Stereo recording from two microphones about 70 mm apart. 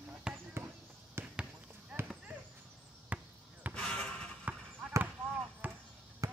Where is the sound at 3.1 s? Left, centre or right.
Right.